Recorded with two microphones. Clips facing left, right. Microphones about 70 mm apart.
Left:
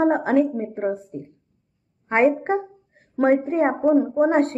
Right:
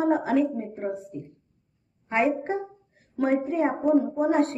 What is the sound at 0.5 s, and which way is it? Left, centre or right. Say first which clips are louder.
A woman's voice: left 6 dB; left.